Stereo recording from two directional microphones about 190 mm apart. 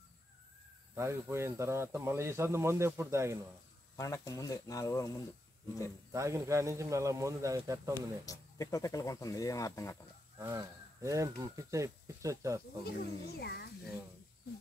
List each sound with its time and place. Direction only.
0.9 s speech: 15° right (ahead or behind)
3.9 s speech: 15° left (ahead or behind)
6.1 s speech: 15° right (ahead or behind)
7.9 s speech: 15° left (ahead or behind)
10.4 s speech: 15° right (ahead or behind)
13.0 s a child's voice: 55° left (ahead or behind)